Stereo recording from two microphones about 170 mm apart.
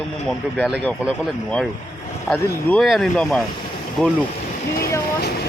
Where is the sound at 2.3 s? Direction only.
Centre (ahead or behind).